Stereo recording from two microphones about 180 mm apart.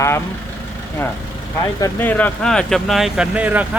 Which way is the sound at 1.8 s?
10° left (ahead or behind).